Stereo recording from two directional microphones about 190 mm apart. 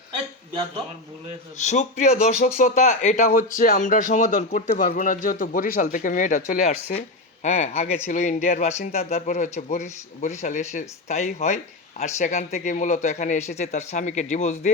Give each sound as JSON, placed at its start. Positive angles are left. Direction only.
{"t": 1.5, "sound": "speech", "side_deg": 40}